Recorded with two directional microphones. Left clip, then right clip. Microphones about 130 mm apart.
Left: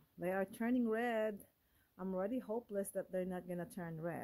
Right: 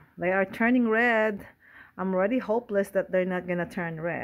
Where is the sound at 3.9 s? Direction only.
35° left (ahead or behind).